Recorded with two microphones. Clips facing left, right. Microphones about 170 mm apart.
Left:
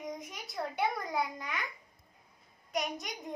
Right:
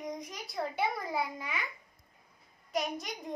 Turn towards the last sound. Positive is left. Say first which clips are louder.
# right 1 dB
turn(degrees=0)  # may be behind; listen again after turning